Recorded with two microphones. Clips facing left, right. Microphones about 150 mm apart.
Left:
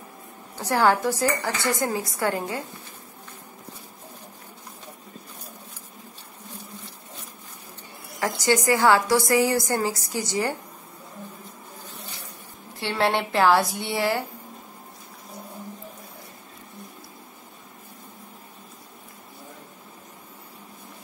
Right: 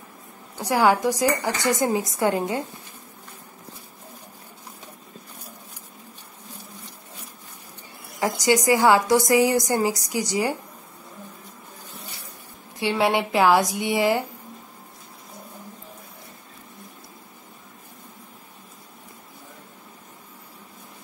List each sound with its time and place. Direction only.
0.6 s a woman's voice: 10° right (ahead or behind)
8.2 s a woman's voice: 15° right (ahead or behind)
12.7 s a woman's voice: 10° right (ahead or behind)